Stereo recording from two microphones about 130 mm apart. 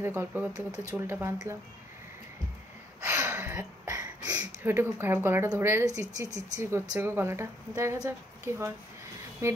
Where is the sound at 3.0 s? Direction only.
15° right (ahead or behind).